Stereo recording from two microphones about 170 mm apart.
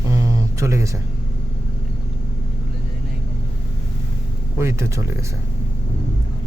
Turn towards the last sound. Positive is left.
turn(degrees=-15)  # may be behind; listen again after turning